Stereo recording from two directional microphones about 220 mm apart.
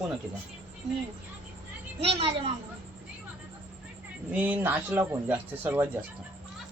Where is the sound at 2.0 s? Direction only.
25° right (ahead or behind).